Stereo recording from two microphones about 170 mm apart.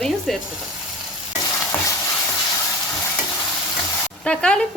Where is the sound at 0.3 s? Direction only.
Centre (ahead or behind).